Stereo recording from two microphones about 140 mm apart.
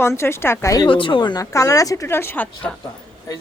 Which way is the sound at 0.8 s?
35° left (ahead or behind).